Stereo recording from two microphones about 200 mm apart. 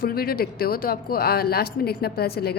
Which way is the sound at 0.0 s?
50° left (ahead or behind).